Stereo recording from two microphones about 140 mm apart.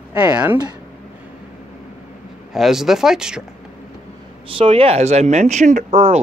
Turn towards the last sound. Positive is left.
turn(degrees=-60)  # may be behind; listen again after turning